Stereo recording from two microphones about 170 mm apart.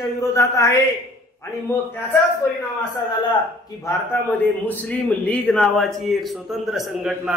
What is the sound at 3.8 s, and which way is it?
A man's voice, 10° left (ahead or behind).